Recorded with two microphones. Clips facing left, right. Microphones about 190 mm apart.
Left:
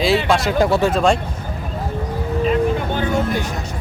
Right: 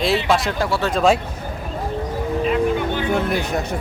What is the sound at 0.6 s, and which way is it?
Speech, 20° left (ahead or behind).